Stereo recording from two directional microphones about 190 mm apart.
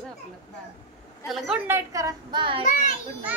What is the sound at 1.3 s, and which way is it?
Speech, centre (ahead or behind).